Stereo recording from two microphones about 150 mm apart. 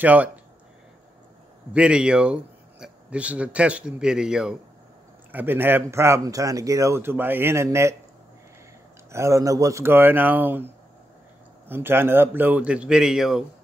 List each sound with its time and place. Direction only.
0.0 s speech: 10° right (ahead or behind)
1.7 s speech: 5° right (ahead or behind)
9.1 s speech: 20° right (ahead or behind)
11.7 s speech: 15° right (ahead or behind)